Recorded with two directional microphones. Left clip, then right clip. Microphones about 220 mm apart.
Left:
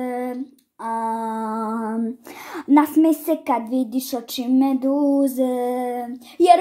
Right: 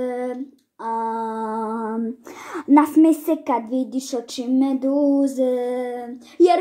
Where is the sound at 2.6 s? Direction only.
25° left (ahead or behind).